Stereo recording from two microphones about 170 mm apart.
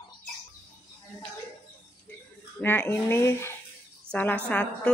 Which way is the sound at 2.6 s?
10° left (ahead or behind).